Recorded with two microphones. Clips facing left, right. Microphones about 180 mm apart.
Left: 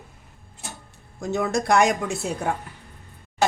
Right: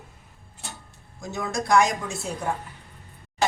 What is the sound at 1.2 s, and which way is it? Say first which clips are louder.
Speech: left 6 dB; 65° left (ahead or behind).